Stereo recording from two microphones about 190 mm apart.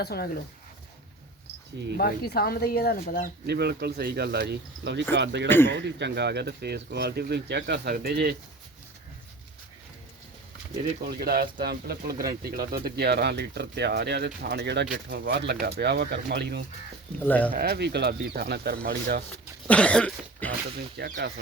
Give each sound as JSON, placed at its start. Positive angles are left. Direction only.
{"t": 0.0, "sound": "speech", "side_deg": 55}
{"t": 2.0, "sound": "speech", "side_deg": 55}
{"t": 3.4, "sound": "speech", "side_deg": -60}
{"t": 5.5, "sound": "speech", "side_deg": 10}
{"t": 5.7, "sound": "speech", "side_deg": -65}
{"t": 11.2, "sound": "speech", "side_deg": -50}
{"t": 17.2, "sound": "speech", "side_deg": 10}
{"t": 17.5, "sound": "speech", "side_deg": -55}
{"t": 19.6, "sound": "cough", "side_deg": 5}
{"t": 20.7, "sound": "speech", "side_deg": -55}